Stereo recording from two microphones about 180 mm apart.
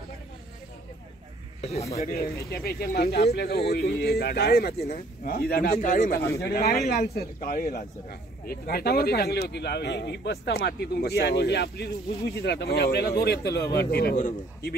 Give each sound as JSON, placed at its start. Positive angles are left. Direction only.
{"t": 1.6, "sound": "speech", "side_deg": 35}
{"t": 2.5, "sound": "speech", "side_deg": 60}